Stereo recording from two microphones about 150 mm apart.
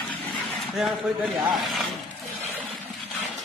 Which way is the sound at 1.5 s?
Centre (ahead or behind).